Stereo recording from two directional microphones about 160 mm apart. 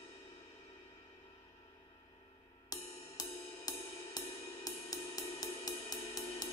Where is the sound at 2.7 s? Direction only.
25° left (ahead or behind).